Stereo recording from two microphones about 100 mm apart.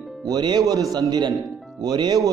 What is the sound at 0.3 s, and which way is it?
A man's voice, 45° right (ahead or behind).